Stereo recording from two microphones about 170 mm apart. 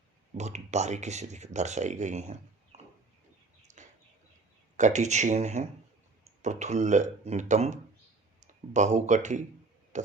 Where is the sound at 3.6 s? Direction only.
45° right (ahead or behind).